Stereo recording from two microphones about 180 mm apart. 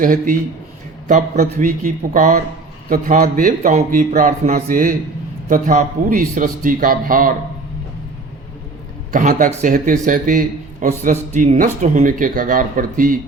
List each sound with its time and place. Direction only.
0.0 s a man's voice: 50° right (ahead or behind)
9.1 s a man's voice: 45° right (ahead or behind)